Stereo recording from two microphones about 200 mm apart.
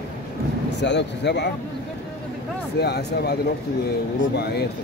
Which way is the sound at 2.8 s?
55° left (ahead or behind).